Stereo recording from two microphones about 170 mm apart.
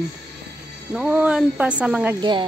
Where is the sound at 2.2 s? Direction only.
30° right (ahead or behind).